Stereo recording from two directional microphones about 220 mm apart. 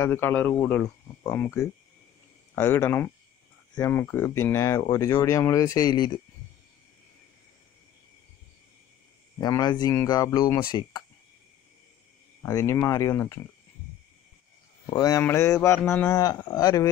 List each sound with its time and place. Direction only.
0.0 s speech: 10° left (ahead or behind)
9.4 s speech: 20° left (ahead or behind)
12.4 s speech: 15° left (ahead or behind)
14.9 s speech: 15° left (ahead or behind)